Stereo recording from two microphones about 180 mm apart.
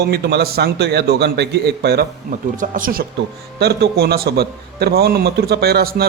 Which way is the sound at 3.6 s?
65° right (ahead or behind).